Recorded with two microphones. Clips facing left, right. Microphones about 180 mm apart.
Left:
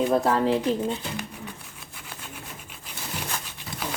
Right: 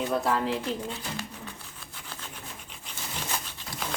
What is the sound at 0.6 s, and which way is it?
Speech, 20° left (ahead or behind).